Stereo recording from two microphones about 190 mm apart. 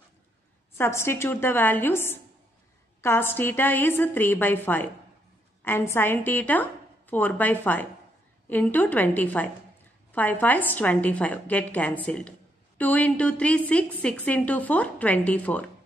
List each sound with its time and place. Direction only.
0.7 s a woman's voice: 15° left (ahead or behind)